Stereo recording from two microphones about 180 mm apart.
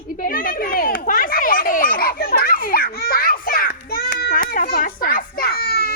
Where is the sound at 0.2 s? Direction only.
50° left (ahead or behind).